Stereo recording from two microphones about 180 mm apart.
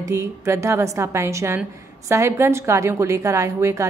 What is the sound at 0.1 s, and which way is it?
A woman's voice, 15° right (ahead or behind).